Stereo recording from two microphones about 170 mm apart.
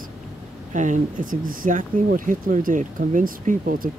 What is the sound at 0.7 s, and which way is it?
Speech, 45° right (ahead or behind).